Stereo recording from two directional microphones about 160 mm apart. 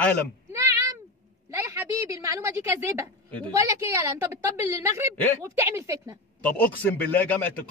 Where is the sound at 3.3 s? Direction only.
10° left (ahead or behind).